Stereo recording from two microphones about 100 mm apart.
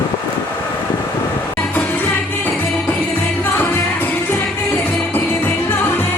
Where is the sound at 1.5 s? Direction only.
20° left (ahead or behind).